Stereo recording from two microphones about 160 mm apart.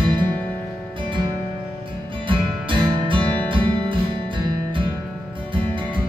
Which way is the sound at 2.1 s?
30° right (ahead or behind).